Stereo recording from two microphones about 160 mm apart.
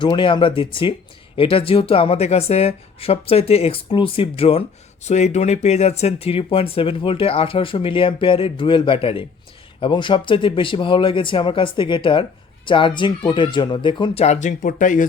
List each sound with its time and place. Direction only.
0.0 s speech: 30° left (ahead or behind); by 15.0 s 55° left (ahead or behind)